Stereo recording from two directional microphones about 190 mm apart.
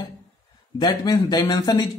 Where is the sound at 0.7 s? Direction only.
20° left (ahead or behind).